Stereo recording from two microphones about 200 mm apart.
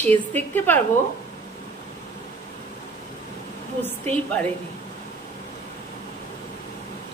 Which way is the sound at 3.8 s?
5° left (ahead or behind).